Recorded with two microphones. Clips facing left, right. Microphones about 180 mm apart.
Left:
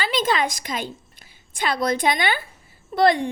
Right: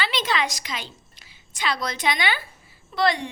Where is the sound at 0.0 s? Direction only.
45° left (ahead or behind).